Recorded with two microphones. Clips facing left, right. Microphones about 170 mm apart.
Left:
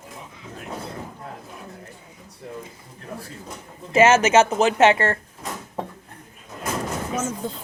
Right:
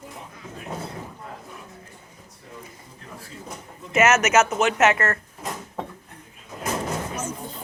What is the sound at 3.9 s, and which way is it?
Speech, 30° left (ahead or behind).